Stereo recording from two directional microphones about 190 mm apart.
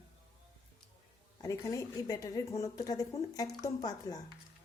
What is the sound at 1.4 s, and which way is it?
A woman's voice, 15° left (ahead or behind).